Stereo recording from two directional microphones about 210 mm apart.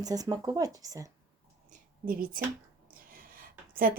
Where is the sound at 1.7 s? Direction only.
40° right (ahead or behind).